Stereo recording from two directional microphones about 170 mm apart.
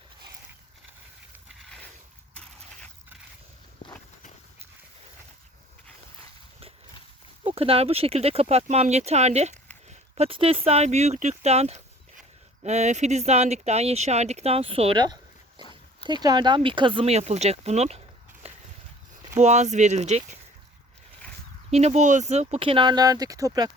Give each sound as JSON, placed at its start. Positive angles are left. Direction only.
{"t": 7.4, "sound": "speech", "side_deg": -35}
{"t": 18.4, "sound": "a sound", "side_deg": -35}
{"t": 19.4, "sound": "speech", "side_deg": -40}
{"t": 21.7, "sound": "speech", "side_deg": -40}